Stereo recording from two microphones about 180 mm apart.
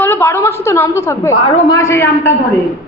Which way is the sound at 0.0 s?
10° left (ahead or behind).